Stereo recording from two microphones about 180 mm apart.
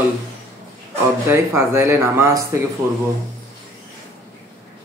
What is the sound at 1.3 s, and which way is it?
Speech, 15° right (ahead or behind).